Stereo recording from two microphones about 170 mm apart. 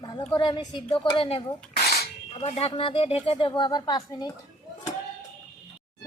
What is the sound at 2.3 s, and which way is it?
Speech, 35° left (ahead or behind).